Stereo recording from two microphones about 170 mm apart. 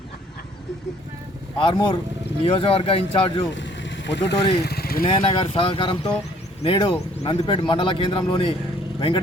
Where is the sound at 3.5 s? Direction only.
90° left.